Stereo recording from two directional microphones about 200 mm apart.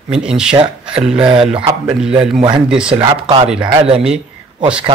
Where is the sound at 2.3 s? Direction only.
25° right (ahead or behind).